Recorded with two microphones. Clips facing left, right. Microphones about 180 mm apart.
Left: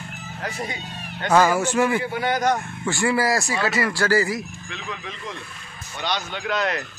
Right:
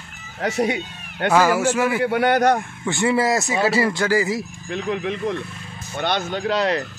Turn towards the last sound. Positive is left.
turn(degrees=-30)  # may be behind; listen again after turning